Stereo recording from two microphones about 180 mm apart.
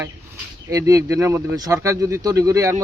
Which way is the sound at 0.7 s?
15° right (ahead or behind).